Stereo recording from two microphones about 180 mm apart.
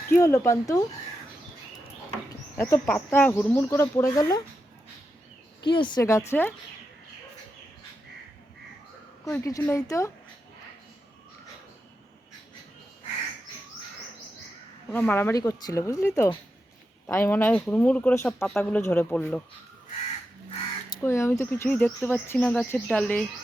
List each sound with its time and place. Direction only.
0.1 s speech: 15° left (ahead or behind)
2.6 s speech: 15° left (ahead or behind)
5.6 s speech: 25° left (ahead or behind)
9.2 s speech: 15° left (ahead or behind)
14.9 s speech: 10° left (ahead or behind)
21.0 s speech: 15° left (ahead or behind)